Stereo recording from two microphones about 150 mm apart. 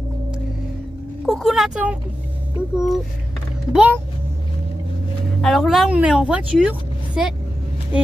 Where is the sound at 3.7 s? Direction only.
5° right (ahead or behind).